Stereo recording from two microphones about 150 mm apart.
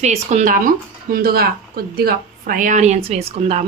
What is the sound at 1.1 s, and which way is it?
Speech, 90° right.